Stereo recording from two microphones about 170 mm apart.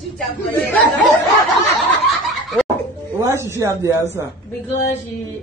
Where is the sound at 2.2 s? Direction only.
Centre (ahead or behind).